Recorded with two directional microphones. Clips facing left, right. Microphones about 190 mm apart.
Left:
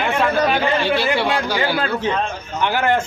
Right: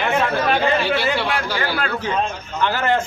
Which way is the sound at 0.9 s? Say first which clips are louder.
Left 2 dB; 15° left (ahead or behind).